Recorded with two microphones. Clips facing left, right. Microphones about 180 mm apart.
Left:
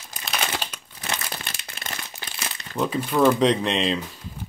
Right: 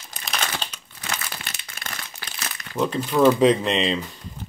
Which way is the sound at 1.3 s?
35° left (ahead or behind).